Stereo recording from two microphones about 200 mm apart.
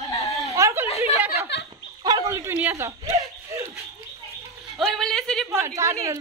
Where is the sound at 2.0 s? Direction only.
15° right (ahead or behind).